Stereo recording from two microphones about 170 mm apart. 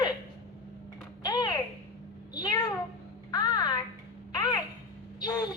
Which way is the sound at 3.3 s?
25° left (ahead or behind).